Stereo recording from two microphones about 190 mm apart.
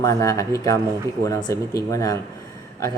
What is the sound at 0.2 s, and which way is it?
Speech, 15° left (ahead or behind).